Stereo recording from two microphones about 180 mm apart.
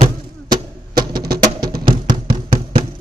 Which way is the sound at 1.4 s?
20° right (ahead or behind).